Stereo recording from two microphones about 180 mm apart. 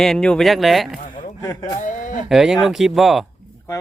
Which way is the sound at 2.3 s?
Centre (ahead or behind).